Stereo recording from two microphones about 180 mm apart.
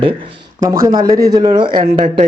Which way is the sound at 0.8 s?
20° right (ahead or behind).